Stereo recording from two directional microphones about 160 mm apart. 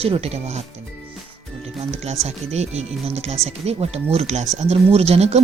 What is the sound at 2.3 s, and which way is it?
Speech, 45° right (ahead or behind).